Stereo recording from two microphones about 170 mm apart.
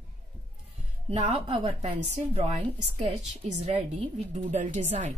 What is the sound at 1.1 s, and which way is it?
A woman's voice, 35° right (ahead or behind).